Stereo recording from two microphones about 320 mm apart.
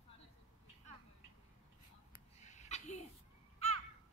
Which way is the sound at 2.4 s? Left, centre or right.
Left.